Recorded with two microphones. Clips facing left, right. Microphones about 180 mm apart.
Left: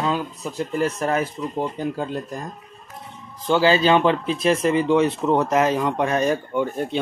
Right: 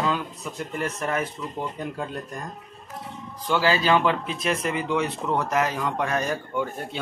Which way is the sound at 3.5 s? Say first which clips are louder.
Left 5 dB; 25° left (ahead or behind).